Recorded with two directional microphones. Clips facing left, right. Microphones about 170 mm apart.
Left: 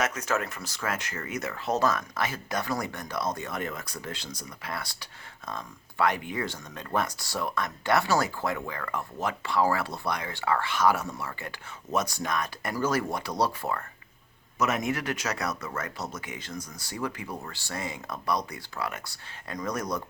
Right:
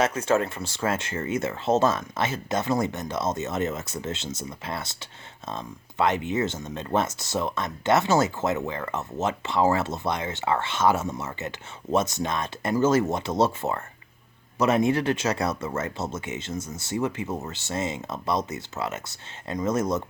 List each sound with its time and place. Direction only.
0.0 s speech: 30° right (ahead or behind)